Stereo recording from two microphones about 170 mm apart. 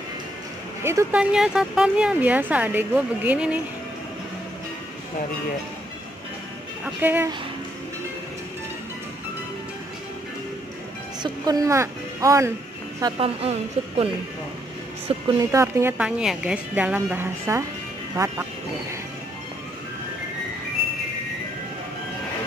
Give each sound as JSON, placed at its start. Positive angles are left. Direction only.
{"t": 0.8, "sound": "speech", "side_deg": -10}
{"t": 7.0, "sound": "speech", "side_deg": -10}
{"t": 11.2, "sound": "speech", "side_deg": -20}
{"t": 13.2, "sound": "a woman's voice", "side_deg": -35}
{"t": 15.1, "sound": "a woman's voice", "side_deg": -35}
{"t": 15.5, "sound": "speech", "side_deg": -15}